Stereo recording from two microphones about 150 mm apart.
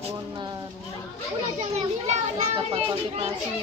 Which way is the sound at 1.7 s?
50° right (ahead or behind).